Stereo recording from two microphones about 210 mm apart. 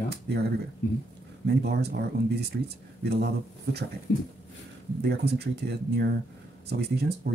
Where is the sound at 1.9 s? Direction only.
50° right (ahead or behind).